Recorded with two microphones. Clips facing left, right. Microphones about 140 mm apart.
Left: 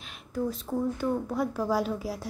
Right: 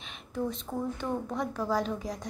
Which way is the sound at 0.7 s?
5° left (ahead or behind).